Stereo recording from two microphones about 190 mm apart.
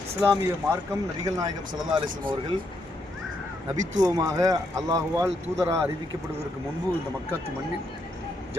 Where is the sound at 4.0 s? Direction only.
20° right (ahead or behind).